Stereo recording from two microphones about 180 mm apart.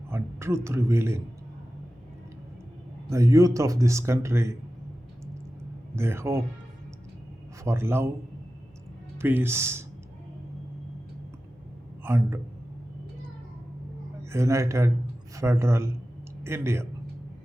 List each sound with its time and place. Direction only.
0.1 s speech: 15° right (ahead or behind)
3.1 s speech: 15° right (ahead or behind)
6.0 s speech: 15° right (ahead or behind)
7.6 s speech: 15° right (ahead or behind)
9.1 s speech: 10° right (ahead or behind)
12.0 s speech: 15° right (ahead or behind)
14.3 s speech: 15° right (ahead or behind)